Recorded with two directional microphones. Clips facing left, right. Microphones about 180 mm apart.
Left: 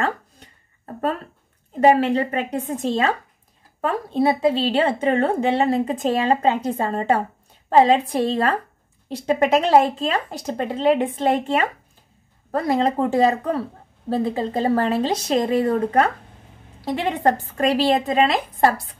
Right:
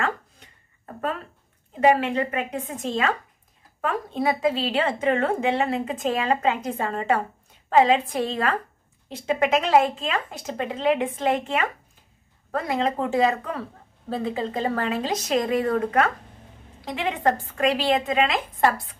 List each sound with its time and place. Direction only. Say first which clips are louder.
1.8 s speech: left 4 dB; 40° left (ahead or behind)